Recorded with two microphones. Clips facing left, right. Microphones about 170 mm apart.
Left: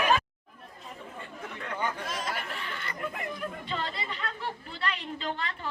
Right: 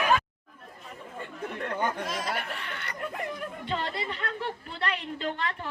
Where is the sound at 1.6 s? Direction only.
50° right (ahead or behind).